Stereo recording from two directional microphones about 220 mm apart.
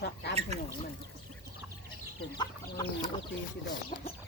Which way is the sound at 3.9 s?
35° left (ahead or behind).